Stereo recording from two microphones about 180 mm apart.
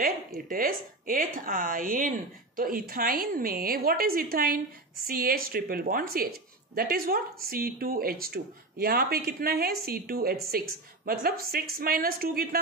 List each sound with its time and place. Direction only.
0.0 s speech: 50° right (ahead or behind)